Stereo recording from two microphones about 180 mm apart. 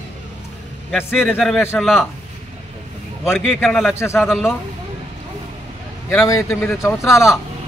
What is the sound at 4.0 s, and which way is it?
Speech, 15° left (ahead or behind).